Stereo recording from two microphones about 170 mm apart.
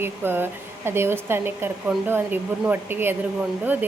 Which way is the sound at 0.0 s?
10° right (ahead or behind).